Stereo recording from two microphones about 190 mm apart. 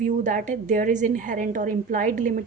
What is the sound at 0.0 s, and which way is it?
A woman's voice, 45° right (ahead or behind).